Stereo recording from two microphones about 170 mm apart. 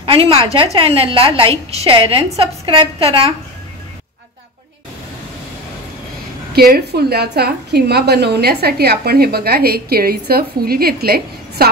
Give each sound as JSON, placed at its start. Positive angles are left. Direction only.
{"t": 0.0, "sound": "a woman's voice", "side_deg": -35}
{"t": 6.5, "sound": "a woman's voice", "side_deg": -65}